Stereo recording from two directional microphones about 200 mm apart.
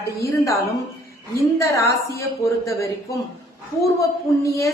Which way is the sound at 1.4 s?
15° left (ahead or behind).